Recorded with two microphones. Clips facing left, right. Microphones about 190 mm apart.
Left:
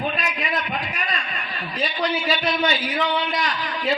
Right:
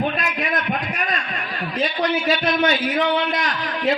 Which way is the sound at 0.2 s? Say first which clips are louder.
Right 2 dB; 50° right (ahead or behind).